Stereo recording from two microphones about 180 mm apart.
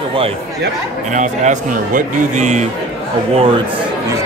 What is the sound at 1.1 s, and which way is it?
A man's voice, 45° right (ahead or behind).